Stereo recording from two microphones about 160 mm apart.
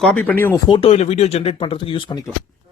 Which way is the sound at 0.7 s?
35° left (ahead or behind).